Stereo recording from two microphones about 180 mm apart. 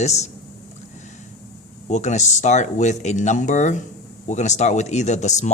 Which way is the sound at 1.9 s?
40° left (ahead or behind).